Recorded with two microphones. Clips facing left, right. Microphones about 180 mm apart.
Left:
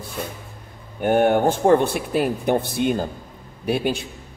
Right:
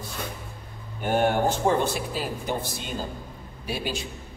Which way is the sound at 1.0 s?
55° left (ahead or behind).